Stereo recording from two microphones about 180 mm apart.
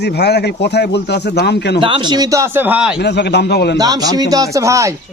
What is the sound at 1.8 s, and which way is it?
A man's voice, 30° right (ahead or behind).